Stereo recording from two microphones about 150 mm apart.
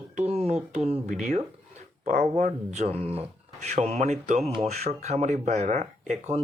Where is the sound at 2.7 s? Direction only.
45° right (ahead or behind).